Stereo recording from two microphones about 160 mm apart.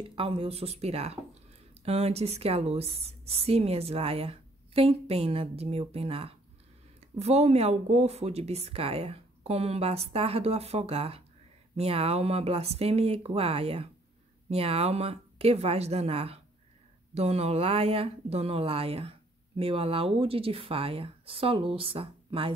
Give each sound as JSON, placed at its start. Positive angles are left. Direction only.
{"t": 0.1, "sound": "speech", "side_deg": -35}